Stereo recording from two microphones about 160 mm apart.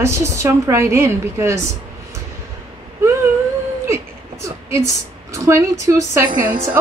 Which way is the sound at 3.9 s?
20° right (ahead or behind).